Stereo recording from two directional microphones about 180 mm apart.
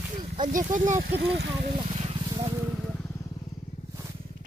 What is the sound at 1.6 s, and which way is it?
Vehicle, 35° right (ahead or behind).